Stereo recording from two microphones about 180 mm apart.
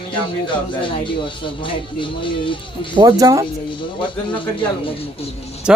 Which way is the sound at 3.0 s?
20° right (ahead or behind).